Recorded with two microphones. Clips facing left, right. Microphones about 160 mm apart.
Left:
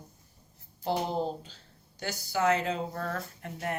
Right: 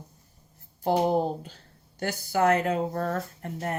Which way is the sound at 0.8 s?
55° right (ahead or behind).